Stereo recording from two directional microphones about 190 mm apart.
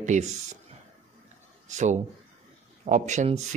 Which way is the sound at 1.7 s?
40° right (ahead or behind).